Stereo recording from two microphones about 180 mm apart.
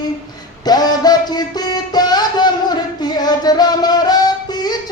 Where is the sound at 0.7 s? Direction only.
20° left (ahead or behind).